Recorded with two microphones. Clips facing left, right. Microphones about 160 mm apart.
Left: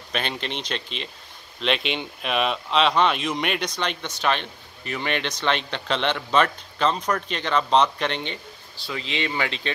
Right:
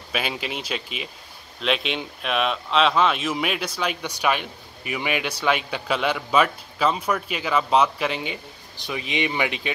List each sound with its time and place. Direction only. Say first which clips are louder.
0.1 s speech: right 1 dB; 5° right (ahead or behind)
8.7 s speech: right 2 dB; 15° right (ahead or behind)